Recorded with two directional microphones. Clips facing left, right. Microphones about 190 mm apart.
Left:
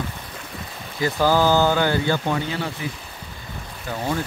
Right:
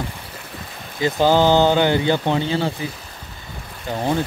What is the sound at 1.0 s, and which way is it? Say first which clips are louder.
Speech: right 3 dB; 20° right (ahead or behind).